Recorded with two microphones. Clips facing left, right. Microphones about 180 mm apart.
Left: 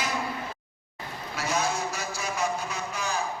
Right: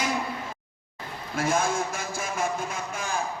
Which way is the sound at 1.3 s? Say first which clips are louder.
Right 3 dB; 50° right (ahead or behind).